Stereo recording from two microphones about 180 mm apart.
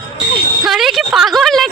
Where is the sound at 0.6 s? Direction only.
Centre (ahead or behind).